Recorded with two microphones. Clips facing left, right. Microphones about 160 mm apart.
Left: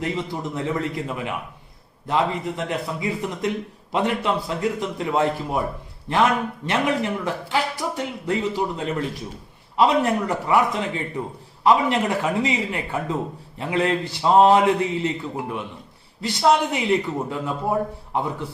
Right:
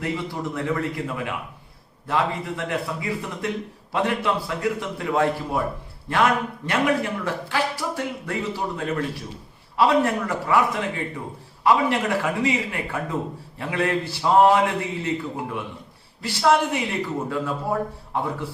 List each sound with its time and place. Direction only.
0.0 s a man's voice: 20° left (ahead or behind)